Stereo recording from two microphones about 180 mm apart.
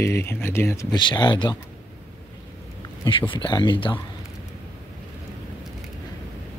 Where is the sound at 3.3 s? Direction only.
25° left (ahead or behind).